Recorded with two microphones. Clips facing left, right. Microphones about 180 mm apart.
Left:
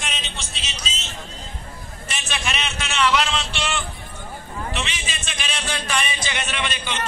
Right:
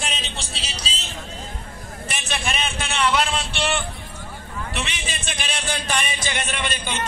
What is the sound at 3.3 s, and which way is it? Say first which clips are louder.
Vehicle: right 2 dB; 55° right (ahead or behind).